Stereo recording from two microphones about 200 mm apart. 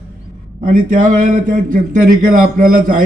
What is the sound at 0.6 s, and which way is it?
Speech, 40° right (ahead or behind).